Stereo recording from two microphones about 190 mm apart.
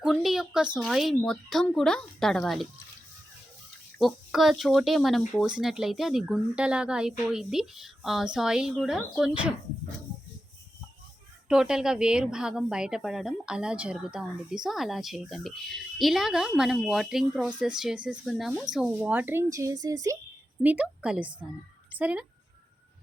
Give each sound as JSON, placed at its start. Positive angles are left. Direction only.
{"t": 0.0, "sound": "a woman's voice", "side_deg": 0}
{"t": 3.9, "sound": "a woman's voice", "side_deg": 0}
{"t": 11.4, "sound": "a woman's voice", "side_deg": -5}
{"t": 20.6, "sound": "a woman's voice", "side_deg": -5}